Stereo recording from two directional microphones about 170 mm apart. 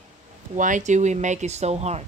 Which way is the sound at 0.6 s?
50° right (ahead or behind).